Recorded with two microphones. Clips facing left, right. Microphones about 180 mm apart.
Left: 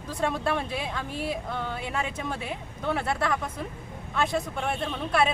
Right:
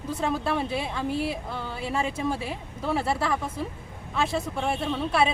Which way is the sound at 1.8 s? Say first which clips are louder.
Right 3 dB; 30° right (ahead or behind).